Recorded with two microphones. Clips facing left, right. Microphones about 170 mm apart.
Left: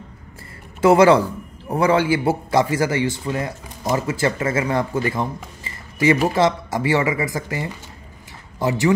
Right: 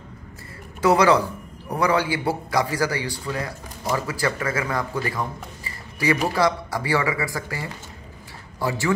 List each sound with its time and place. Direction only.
0.7 s a man's voice: 25° left (ahead or behind)